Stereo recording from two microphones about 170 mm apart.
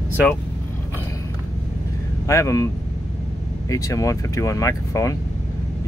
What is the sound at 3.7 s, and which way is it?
Speech, 20° left (ahead or behind).